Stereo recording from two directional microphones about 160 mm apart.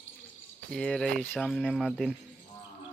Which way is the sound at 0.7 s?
5° left (ahead or behind).